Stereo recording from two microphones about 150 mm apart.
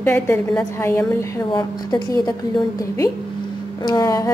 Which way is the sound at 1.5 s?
30° left (ahead or behind).